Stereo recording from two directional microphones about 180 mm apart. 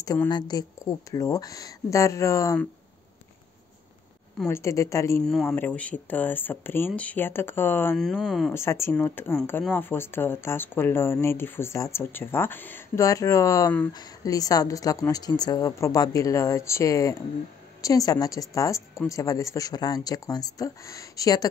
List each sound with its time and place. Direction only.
0.0 s a woman's voice: 20° left (ahead or behind)
4.5 s speech: 15° left (ahead or behind)
5.2 s speech: 5° left (ahead or behind)
8.0 s speech: centre (ahead or behind)
8.5 s a woman's voice: 15° left (ahead or behind)